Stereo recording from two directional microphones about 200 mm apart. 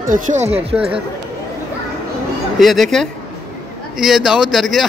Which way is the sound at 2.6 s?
Centre (ahead or behind).